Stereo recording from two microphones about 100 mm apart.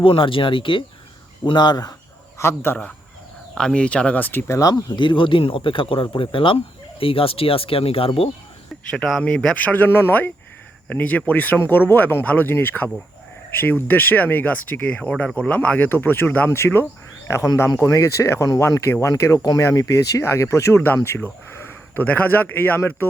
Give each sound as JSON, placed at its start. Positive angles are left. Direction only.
{"t": 0.0, "sound": "speech", "side_deg": 60}
{"t": 1.5, "sound": "speech", "side_deg": 45}
{"t": 2.4, "sound": "speech", "side_deg": 25}
{"t": 3.5, "sound": "speech", "side_deg": 5}
{"t": 4.9, "sound": "speech", "side_deg": 55}
{"t": 8.9, "sound": "speech", "side_deg": 5}
{"t": 9.7, "sound": "speech", "side_deg": 20}